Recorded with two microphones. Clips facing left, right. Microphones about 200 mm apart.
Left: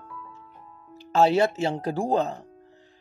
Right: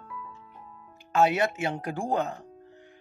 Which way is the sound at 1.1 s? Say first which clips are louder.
Left 4 dB; 30° left (ahead or behind).